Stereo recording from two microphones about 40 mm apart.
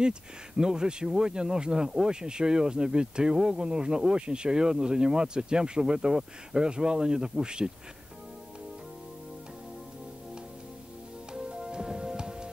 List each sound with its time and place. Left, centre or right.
0.0 s speech: centre
11.3 s music: centre